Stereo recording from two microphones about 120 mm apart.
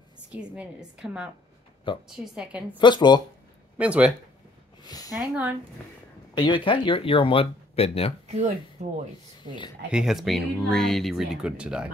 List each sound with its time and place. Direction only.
0.3 s a woman's voice: 10° right (ahead or behind)
2.8 s speech: 40° left (ahead or behind)
3.7 s a woman's voice: 10° right (ahead or behind)
4.8 s a sound: 30° left (ahead or behind)
5.2 s a woman's voice: 15° right (ahead or behind)
6.3 s speech: 40° left (ahead or behind)
8.3 s speech: 70° right (ahead or behind)
9.4 s speech: 40° left (ahead or behind)
9.8 s speech: 5° right (ahead or behind)